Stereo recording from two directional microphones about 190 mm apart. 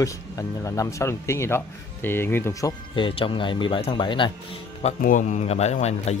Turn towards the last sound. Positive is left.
turn(degrees=35)  # may be behind; listen again after turning